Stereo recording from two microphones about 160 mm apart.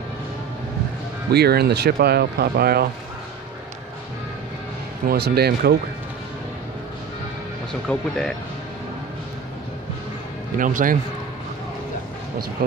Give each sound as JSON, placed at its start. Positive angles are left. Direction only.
{"t": 1.3, "sound": "speech", "side_deg": -85}
{"t": 5.0, "sound": "speech", "side_deg": -75}
{"t": 7.9, "sound": "speech", "side_deg": 5}
{"t": 10.6, "sound": "a man's voice", "side_deg": -55}